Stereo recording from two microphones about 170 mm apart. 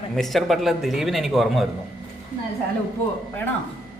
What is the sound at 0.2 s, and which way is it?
Speech, centre (ahead or behind).